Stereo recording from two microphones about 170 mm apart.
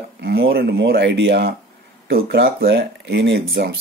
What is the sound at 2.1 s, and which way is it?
Speech, 65° right (ahead or behind).